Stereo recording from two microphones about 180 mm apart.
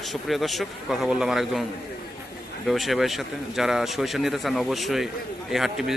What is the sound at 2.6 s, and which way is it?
A man's voice, centre (ahead or behind).